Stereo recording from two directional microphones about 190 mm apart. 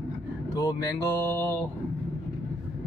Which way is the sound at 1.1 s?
10° left (ahead or behind).